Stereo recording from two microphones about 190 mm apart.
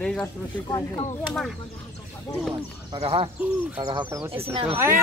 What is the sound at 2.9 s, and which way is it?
Speech, 30° right (ahead or behind).